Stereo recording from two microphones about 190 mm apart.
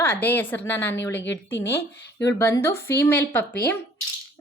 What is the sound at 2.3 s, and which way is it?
A woman's voice, 15° left (ahead or behind).